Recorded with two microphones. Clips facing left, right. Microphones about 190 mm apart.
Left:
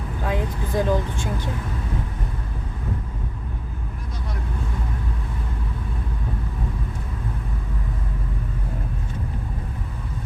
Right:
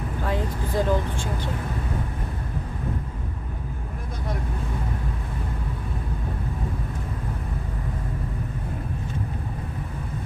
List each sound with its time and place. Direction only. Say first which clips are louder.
0.3 s vehicle: left 2 dB; 15° left (ahead or behind)